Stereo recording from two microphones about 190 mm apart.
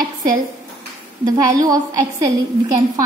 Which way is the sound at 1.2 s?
20° right (ahead or behind).